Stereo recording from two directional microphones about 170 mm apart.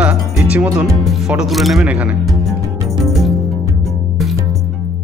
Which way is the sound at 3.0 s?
Centre (ahead or behind).